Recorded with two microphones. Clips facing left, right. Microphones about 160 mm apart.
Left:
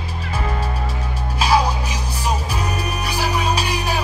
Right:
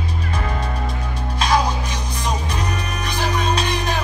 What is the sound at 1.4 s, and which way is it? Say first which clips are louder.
Music: left 1 dB; 5° left (ahead or behind).